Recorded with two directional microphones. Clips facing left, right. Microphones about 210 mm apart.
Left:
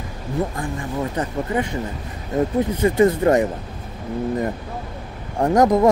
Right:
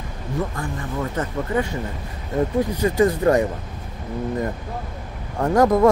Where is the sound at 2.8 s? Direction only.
25° left (ahead or behind).